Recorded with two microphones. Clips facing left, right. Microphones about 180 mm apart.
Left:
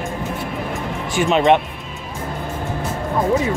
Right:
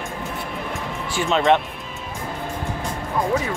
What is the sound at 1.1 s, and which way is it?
Speech, 15° left (ahead or behind).